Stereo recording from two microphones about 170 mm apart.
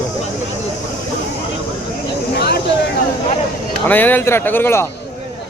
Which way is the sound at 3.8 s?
10° left (ahead or behind).